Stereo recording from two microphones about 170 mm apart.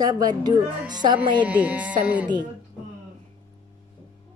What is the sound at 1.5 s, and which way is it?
Speech, 10° right (ahead or behind).